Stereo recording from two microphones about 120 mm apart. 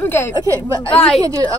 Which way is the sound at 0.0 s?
20° left (ahead or behind).